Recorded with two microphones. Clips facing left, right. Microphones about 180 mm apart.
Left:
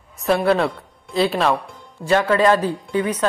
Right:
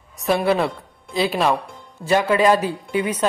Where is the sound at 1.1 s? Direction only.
Centre (ahead or behind).